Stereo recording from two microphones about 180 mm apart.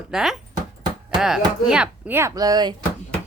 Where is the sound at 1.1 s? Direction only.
5° right (ahead or behind).